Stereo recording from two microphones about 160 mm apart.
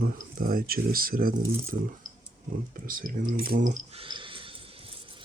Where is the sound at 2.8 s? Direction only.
60° right (ahead or behind).